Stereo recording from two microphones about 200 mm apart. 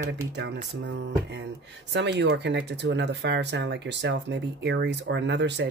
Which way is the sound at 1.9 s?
60° right (ahead or behind).